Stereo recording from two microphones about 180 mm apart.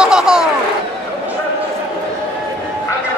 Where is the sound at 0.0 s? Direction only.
5° right (ahead or behind).